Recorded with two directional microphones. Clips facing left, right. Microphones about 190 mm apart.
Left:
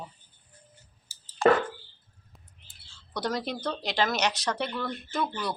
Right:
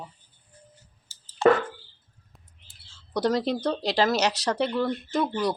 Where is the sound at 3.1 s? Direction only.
35° right (ahead or behind).